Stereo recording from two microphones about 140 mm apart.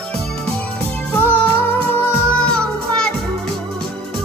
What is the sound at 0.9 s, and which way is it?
Music, 15° left (ahead or behind).